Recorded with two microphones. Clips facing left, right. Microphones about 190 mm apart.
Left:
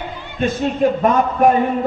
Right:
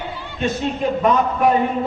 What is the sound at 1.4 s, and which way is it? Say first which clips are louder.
Speech: left 4 dB; 50° left (ahead or behind).